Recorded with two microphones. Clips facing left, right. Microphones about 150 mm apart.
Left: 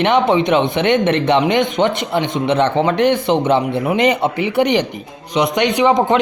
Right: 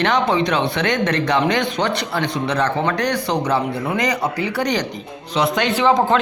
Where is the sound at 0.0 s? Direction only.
20° left (ahead or behind).